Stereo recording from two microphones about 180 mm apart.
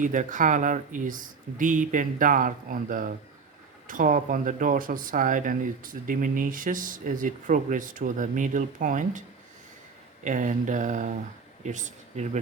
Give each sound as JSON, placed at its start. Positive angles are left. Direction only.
{"t": 0.0, "sound": "speech", "side_deg": -45}
{"t": 10.2, "sound": "speech", "side_deg": -45}